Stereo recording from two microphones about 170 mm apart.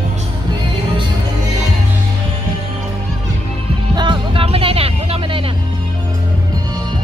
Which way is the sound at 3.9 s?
30° right (ahead or behind).